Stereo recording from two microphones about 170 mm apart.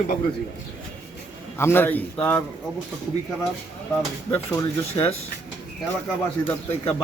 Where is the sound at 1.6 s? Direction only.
15° left (ahead or behind).